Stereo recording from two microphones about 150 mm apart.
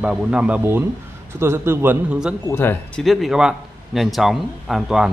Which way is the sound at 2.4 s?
15° left (ahead or behind).